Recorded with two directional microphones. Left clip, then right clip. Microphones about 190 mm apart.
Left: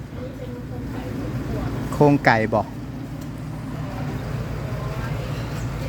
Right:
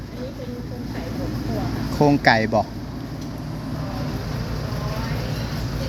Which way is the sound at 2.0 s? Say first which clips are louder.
Even; 20° left (ahead or behind).